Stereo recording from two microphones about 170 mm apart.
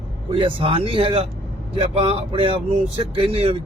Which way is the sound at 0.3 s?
30° right (ahead or behind).